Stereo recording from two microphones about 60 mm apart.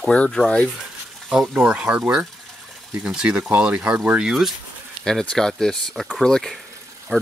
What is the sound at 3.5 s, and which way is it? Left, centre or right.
Speech, right.